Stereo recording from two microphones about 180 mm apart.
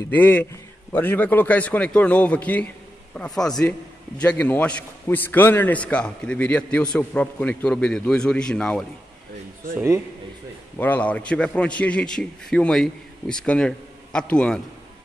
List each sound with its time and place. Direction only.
0.1 s a man's voice: 10° left (ahead or behind)
9.8 s speech: 15° right (ahead or behind)
10.8 s a man's voice: 10° left (ahead or behind)